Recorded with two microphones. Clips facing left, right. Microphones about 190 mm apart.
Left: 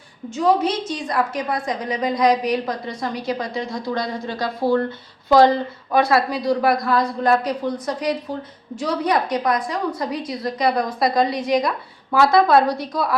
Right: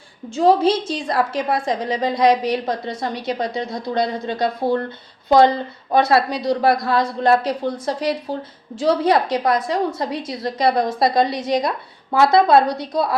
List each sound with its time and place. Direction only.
0.3 s a man's voice: 30° right (ahead or behind)